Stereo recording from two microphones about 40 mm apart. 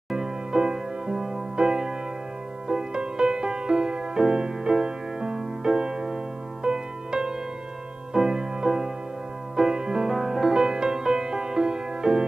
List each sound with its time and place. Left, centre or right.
0.1 s music: centre